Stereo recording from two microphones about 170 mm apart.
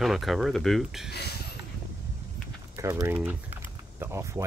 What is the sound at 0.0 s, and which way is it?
Speech, centre (ahead or behind).